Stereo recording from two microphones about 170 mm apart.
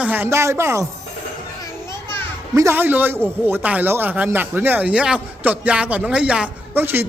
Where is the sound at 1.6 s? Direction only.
15° left (ahead or behind).